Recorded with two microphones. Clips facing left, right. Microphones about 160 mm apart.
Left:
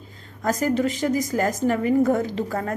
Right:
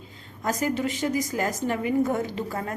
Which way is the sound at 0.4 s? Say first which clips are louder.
Left 4 dB; 40° left (ahead or behind).